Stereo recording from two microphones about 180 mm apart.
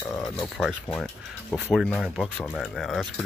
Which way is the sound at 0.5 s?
Centre (ahead or behind).